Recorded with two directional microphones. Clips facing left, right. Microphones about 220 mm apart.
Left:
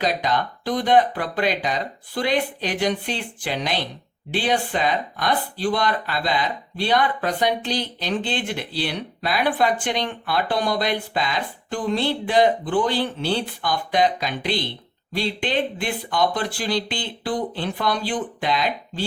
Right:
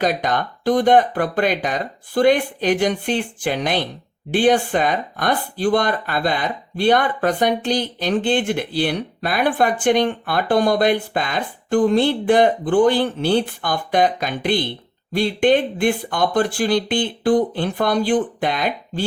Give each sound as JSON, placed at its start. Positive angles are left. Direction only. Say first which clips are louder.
{"t": 0.0, "sound": "speech", "louder": "right 3 dB", "side_deg": -50}